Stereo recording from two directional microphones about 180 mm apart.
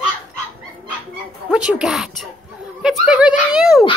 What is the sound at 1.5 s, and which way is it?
Speech, 5° right (ahead or behind).